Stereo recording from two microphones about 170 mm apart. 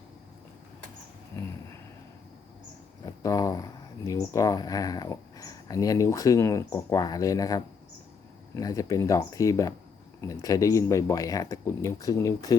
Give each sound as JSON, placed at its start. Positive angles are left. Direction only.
{"t": 3.1, "sound": "speech", "side_deg": 20}